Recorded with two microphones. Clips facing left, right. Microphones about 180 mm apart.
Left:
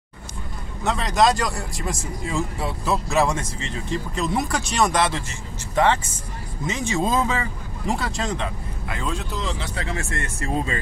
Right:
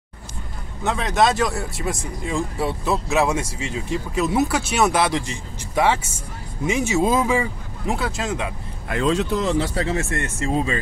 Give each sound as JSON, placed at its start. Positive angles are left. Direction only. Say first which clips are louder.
{"t": 0.8, "sound": "speech", "louder": "even", "side_deg": 0}
{"t": 8.8, "sound": "speech", "louder": "right 9 dB", "side_deg": -70}
{"t": 9.4, "sound": "speech", "louder": "right 8 dB", "side_deg": -45}
{"t": 9.8, "sound": "speech", "louder": "right 5 dB", "side_deg": -25}